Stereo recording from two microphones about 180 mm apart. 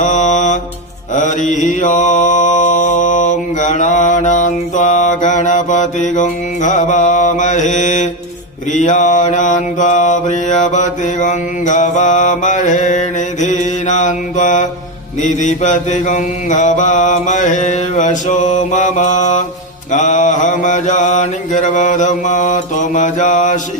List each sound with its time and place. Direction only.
0.0 s mantra: 40° left (ahead or behind)